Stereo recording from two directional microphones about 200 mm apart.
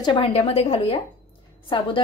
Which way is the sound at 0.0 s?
25° left (ahead or behind).